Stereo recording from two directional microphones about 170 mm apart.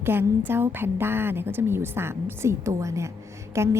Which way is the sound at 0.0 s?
15° right (ahead or behind).